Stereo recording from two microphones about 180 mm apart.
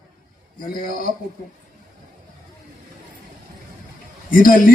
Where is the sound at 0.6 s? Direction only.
50° left (ahead or behind).